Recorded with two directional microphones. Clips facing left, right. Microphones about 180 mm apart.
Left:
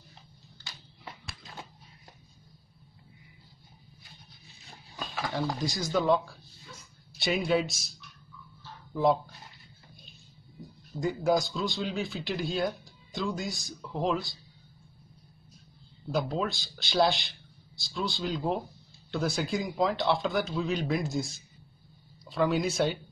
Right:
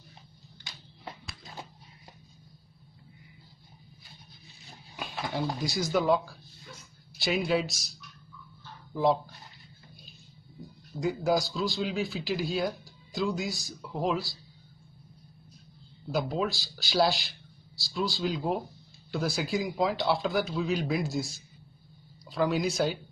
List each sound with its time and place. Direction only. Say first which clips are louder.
4.9 s speech: even; 10° right (ahead or behind)
8.9 s speech: even; centre (ahead or behind)
11.0 s speech: even; centre (ahead or behind)
16.1 s speech: even; centre (ahead or behind)